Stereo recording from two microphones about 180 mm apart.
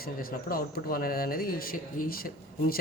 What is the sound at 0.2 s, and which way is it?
A man's voice, 55° left (ahead or behind).